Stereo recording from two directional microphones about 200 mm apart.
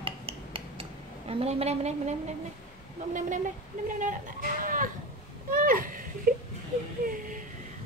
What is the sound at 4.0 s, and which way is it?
Speech, 40° right (ahead or behind).